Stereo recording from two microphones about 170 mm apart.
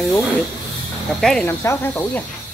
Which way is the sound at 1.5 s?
15° left (ahead or behind).